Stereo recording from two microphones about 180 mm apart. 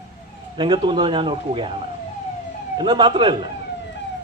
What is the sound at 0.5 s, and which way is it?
A man's voice, 25° right (ahead or behind).